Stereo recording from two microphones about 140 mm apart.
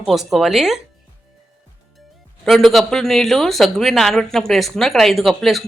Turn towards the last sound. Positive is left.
turn(degrees=0)  # may be behind; listen again after turning